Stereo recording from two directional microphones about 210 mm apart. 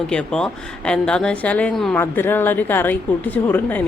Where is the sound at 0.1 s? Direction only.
5° left (ahead or behind).